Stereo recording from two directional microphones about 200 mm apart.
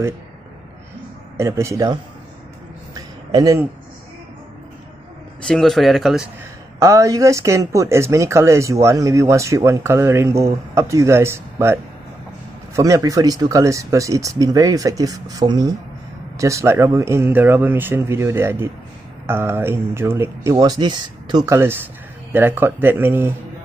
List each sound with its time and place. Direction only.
1.3 s speech: 15° right (ahead or behind)
2.9 s a sound: 20° right (ahead or behind)
5.5 s a man's voice: centre (ahead or behind)
6.8 s speech: 15° right (ahead or behind)